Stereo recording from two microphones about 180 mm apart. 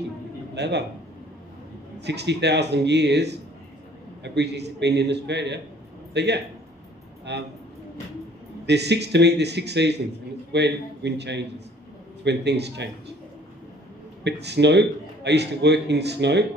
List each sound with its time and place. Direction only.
0.6 s a man's voice: 70° right (ahead or behind)
2.0 s a man's voice: 70° right (ahead or behind)
8.6 s a man's voice: 70° right (ahead or behind)
14.2 s a man's voice: 70° right (ahead or behind)